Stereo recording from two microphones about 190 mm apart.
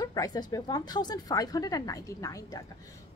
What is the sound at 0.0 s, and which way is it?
Speech, 20° left (ahead or behind).